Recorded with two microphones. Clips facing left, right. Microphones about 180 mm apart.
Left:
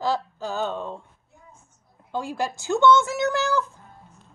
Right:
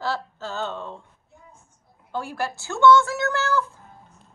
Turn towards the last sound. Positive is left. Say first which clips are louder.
# left 1 dB
turn(degrees=15)  # may be behind; listen again after turning